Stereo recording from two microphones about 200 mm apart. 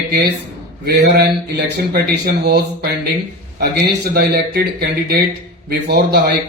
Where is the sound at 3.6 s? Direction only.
55° right (ahead or behind).